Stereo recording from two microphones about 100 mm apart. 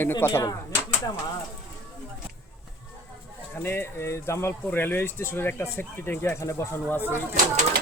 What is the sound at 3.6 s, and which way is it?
Speech, 20° left (ahead or behind).